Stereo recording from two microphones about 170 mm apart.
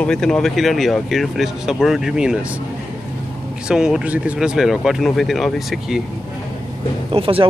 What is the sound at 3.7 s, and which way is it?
Speech, 5° right (ahead or behind).